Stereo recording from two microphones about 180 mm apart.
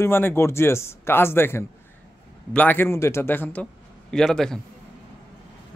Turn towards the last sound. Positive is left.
turn(degrees=5)  # may be behind; listen again after turning